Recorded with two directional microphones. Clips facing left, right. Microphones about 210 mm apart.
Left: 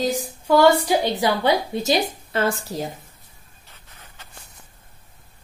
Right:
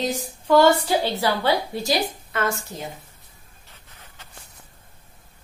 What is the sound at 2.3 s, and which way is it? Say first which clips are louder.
Speech: left 3 dB; 30° left (ahead or behind).